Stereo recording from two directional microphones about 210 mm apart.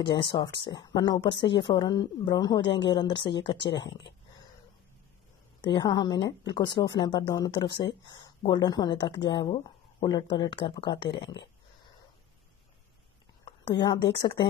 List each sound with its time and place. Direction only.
0.2 s speech: 20° left (ahead or behind)
5.8 s speech: 20° left (ahead or behind)
13.5 s a woman's voice: 25° left (ahead or behind)